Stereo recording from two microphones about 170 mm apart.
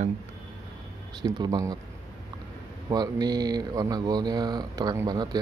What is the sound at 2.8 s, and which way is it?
Speech, 25° right (ahead or behind).